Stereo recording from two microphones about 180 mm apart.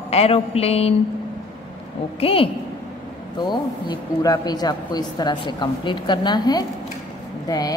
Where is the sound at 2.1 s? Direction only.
30° left (ahead or behind).